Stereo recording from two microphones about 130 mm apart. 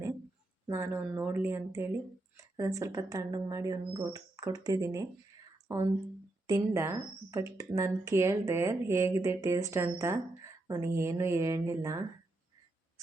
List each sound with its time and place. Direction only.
0.7 s speech: 15° right (ahead or behind)